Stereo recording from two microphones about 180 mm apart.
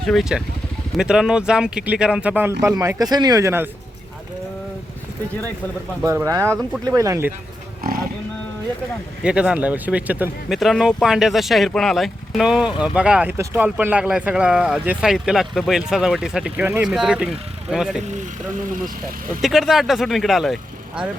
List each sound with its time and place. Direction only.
0.0 s speech: centre (ahead or behind); by 3.7 s 15° right (ahead or behind)
6.0 s speech: 15° right (ahead or behind)
9.2 s speech: 5° right (ahead or behind)
19.4 s speech: centre (ahead or behind)